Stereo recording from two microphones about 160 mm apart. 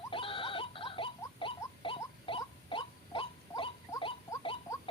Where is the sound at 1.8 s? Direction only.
35° left (ahead or behind).